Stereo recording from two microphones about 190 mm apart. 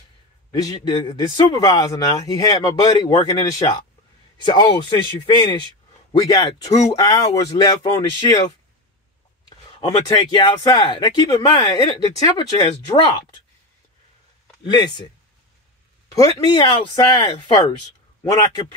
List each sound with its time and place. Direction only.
0.5 s speech: 20° left (ahead or behind)
9.5 s speech: 20° left (ahead or behind)
14.6 s speech: 25° left (ahead or behind)
16.2 s speech: 25° left (ahead or behind)